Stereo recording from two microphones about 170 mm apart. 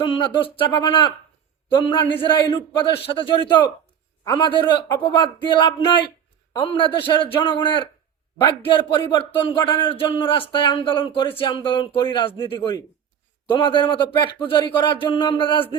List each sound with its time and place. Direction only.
0.0 s speech: 30° left (ahead or behind)